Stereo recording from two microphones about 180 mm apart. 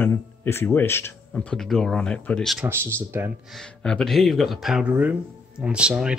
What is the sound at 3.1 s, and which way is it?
Speech, 15° right (ahead or behind).